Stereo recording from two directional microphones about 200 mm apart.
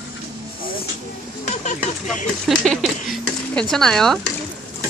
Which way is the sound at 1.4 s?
35° left (ahead or behind).